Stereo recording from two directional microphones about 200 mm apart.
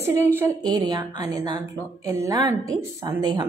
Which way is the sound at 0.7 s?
20° right (ahead or behind).